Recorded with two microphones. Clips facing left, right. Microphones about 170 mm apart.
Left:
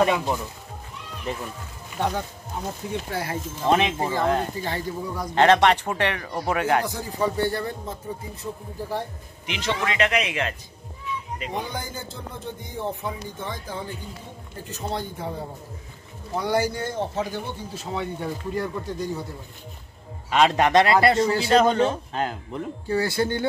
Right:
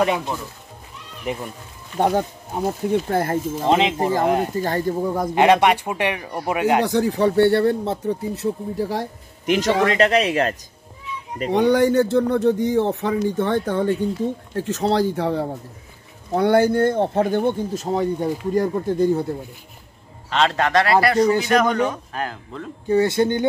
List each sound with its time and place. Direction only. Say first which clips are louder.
1.3 s speech: right 4 dB; 15° right (ahead or behind)
2.0 s speech: right 7 dB; 45° right (ahead or behind)
3.6 s speech: right 2 dB; 20° right (ahead or behind)
4.6 s speech: right 8 dB; 45° right (ahead or behind)
5.3 s speech: right 1 dB; 10° right (ahead or behind)
6.8 s speech: right 8 dB; 70° right (ahead or behind); by 9.0 s 85° right
9.5 s speech: right 9 dB; 45° right (ahead or behind)
11.5 s speech: right 18 dB; 75° right (ahead or behind)
14.5 s speech: right 8 dB; 90° right
16.3 s speech: right 8 dB; 60° right (ahead or behind)
20.2 s a man's voice: left 1 dB; 15° left (ahead or behind)
22.8 s speech: right 7 dB; 25° right (ahead or behind)